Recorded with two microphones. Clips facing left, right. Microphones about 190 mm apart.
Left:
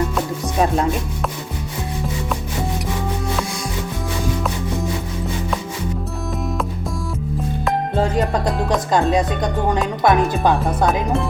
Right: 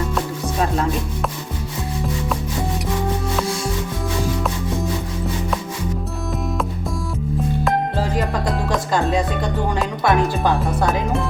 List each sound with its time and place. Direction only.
10.0 s speech: 20° left (ahead or behind)
10.6 s speech: centre (ahead or behind)